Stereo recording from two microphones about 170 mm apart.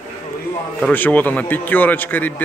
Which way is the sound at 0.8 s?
10° left (ahead or behind).